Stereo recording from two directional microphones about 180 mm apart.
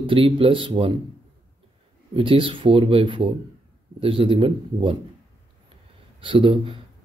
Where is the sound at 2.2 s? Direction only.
30° right (ahead or behind).